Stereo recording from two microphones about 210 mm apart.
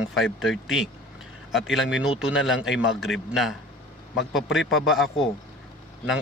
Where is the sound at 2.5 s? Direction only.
65° left (ahead or behind).